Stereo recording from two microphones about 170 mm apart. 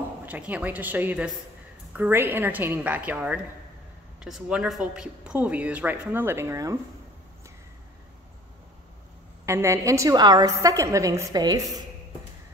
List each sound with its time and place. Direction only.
0.2 s a woman's voice: 10° right (ahead or behind)
9.5 s a woman's voice: 15° right (ahead or behind)